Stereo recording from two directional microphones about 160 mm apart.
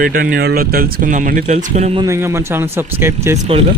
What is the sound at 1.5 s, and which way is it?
Speech, 45° right (ahead or behind).